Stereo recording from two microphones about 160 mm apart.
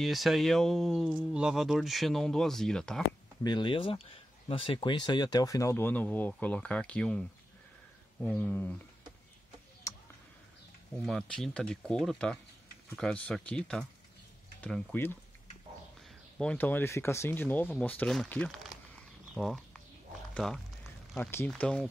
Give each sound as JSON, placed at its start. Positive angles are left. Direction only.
{"t": 0.0, "sound": "speech", "side_deg": 0}
{"t": 3.4, "sound": "speech", "side_deg": 30}
{"t": 9.9, "sound": "clicking", "side_deg": 20}
{"t": 11.0, "sound": "speech", "side_deg": 0}
{"t": 16.3, "sound": "speech", "side_deg": 10}
{"t": 19.3, "sound": "a sound", "side_deg": 0}
{"t": 20.3, "sound": "speech", "side_deg": 5}